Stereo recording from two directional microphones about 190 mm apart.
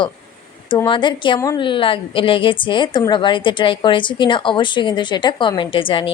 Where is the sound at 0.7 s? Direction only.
25° left (ahead or behind).